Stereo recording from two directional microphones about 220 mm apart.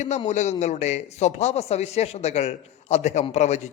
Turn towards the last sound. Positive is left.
turn(degrees=30)  # may be behind; listen again after turning